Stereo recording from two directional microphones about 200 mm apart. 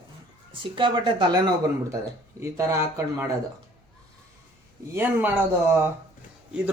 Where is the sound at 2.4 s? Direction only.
15° right (ahead or behind).